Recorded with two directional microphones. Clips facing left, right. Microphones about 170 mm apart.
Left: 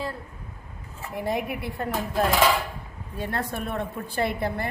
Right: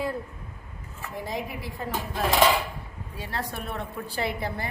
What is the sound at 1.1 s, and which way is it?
Speech, 60° left (ahead or behind).